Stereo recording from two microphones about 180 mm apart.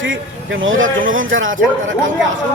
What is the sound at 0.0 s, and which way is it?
Speech, 90° right.